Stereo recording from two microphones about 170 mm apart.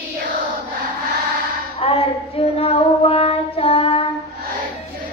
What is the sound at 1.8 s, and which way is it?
Child singing, 35° left (ahead or behind).